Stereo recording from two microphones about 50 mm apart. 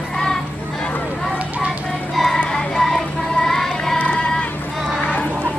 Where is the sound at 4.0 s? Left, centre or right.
Left.